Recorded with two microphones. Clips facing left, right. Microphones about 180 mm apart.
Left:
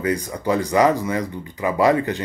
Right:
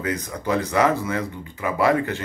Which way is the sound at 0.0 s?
10° left (ahead or behind).